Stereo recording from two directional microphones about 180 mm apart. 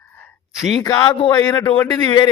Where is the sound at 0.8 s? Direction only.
20° left (ahead or behind).